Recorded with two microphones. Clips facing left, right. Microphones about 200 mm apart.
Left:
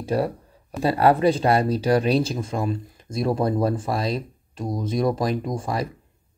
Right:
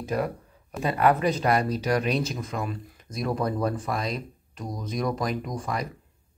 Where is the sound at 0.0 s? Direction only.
30° left (ahead or behind).